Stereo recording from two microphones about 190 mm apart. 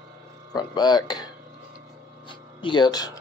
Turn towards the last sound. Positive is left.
turn(degrees=20)  # may be behind; listen again after turning